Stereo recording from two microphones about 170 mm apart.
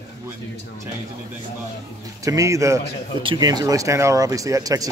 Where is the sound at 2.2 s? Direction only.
20° right (ahead or behind).